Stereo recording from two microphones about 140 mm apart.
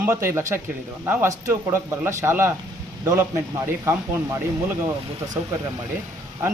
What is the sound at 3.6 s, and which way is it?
Speech, 20° right (ahead or behind).